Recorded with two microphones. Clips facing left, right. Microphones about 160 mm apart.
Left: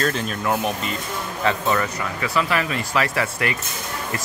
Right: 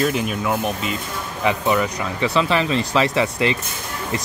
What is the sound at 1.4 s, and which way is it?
Speech, 15° right (ahead or behind).